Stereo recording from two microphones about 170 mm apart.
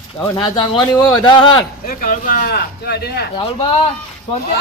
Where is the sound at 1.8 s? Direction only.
55° left (ahead or behind).